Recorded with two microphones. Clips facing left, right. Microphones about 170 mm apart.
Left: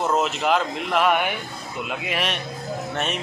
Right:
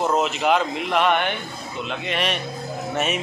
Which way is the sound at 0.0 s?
Centre (ahead or behind).